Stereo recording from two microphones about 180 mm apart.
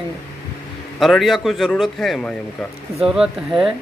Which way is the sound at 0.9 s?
Centre (ahead or behind).